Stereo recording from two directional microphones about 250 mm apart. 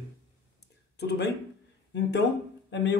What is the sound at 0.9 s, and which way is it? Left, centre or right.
A man's voice, left.